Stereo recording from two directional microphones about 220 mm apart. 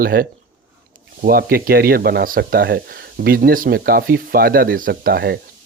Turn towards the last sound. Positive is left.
turn(degrees=-45)  # may be behind; listen again after turning